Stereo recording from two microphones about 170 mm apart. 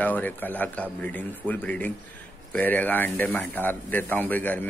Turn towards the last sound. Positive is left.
turn(degrees=10)  # may be behind; listen again after turning